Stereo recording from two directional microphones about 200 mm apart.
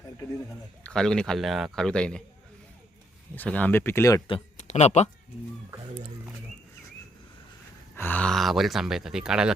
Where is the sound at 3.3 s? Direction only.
10° left (ahead or behind); by 5.1 s 35° left (ahead or behind).